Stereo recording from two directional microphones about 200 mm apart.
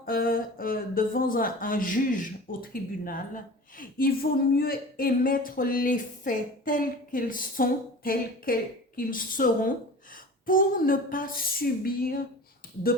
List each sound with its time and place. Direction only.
0.0 s speech: 45° left (ahead or behind)